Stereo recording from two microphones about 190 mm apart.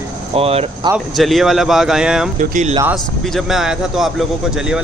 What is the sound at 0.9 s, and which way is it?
A man's voice, centre (ahead or behind).